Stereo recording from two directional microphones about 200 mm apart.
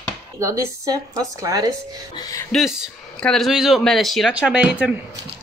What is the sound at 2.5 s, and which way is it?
Speech, centre (ahead or behind).